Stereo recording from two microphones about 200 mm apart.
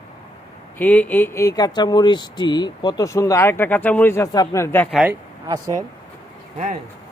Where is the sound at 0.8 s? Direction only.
10° left (ahead or behind).